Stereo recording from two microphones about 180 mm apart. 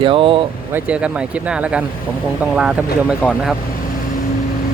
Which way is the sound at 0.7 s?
5° right (ahead or behind).